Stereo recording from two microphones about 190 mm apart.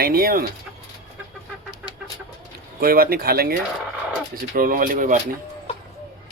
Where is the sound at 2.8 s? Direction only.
50° right (ahead or behind).